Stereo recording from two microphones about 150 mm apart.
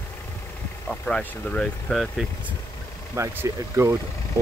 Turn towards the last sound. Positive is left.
turn(degrees=-20)  # may be behind; listen again after turning